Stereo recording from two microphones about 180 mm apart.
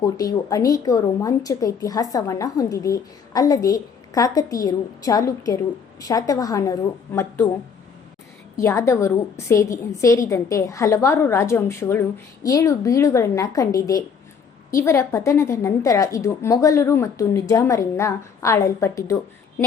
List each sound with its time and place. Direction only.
0.0 s a woman's voice: 20° left (ahead or behind)
8.5 s a woman's voice: 15° left (ahead or behind)